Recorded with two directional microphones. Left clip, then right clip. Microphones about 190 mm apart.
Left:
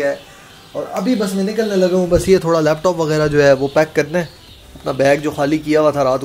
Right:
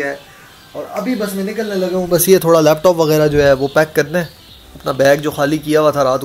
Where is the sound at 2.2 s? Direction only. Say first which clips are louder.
Right 3 dB; 20° right (ahead or behind).